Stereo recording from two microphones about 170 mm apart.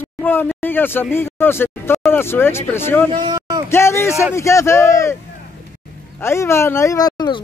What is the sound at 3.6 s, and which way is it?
Speech, 15° left (ahead or behind).